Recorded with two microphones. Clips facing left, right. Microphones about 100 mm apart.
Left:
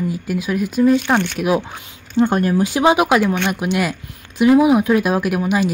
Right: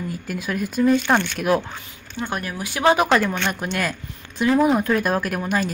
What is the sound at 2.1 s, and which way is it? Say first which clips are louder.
Speech: left 12 dB; 30° left (ahead or behind).